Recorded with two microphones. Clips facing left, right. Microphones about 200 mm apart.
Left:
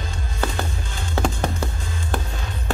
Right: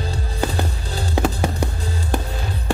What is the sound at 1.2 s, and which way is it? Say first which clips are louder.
Music: even; 10° right (ahead or behind).